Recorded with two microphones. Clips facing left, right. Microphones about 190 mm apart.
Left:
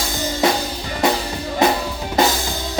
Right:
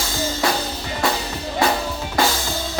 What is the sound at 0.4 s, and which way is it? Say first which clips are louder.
Music: left 7 dB; 20° left (ahead or behind).